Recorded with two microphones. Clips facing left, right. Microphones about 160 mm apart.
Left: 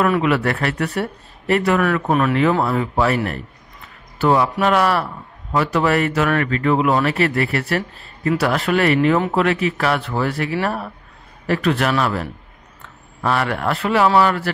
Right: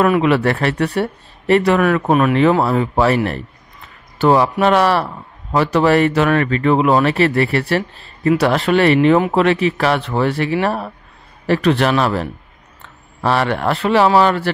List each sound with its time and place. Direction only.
0.0 s speech: 20° right (ahead or behind)
4.2 s speech: 30° right (ahead or behind)